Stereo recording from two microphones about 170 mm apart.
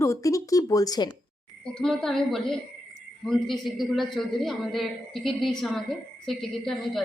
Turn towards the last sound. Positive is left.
turn(degrees=0)  # may be behind; listen again after turning